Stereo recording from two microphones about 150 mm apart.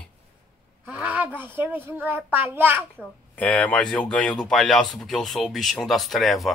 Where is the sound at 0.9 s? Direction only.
10° right (ahead or behind).